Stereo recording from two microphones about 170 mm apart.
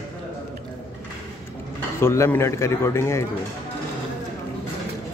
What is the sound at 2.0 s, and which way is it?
Speech, 15° left (ahead or behind).